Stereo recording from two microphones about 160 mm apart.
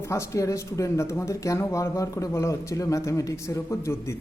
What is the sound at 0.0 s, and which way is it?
Speech, 20° left (ahead or behind).